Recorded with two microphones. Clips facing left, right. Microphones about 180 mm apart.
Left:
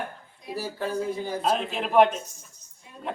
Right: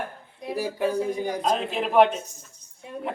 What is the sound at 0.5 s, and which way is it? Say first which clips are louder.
Speech: right 4 dB; 15° right (ahead or behind).